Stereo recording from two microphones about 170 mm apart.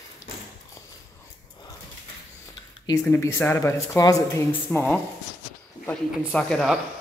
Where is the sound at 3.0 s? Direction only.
10° left (ahead or behind).